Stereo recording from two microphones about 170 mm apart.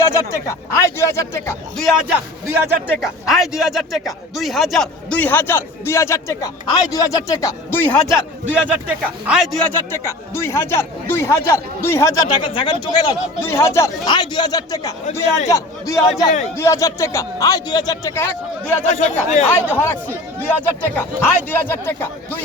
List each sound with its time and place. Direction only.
0.0 s speech: 15° left (ahead or behind)
2.1 s a man's voice: 10° right (ahead or behind)
3.0 s speech: centre (ahead or behind); by 8.1 s 15° left (ahead or behind)
8.4 s a man's voice: 10° right (ahead or behind)
9.6 s speech: 15° left (ahead or behind)
18.9 s speech: 45° left (ahead or behind)
19.5 s speech: 15° left (ahead or behind)